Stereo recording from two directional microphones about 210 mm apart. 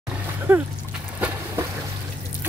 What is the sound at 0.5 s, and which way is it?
Speech, 10° right (ahead or behind).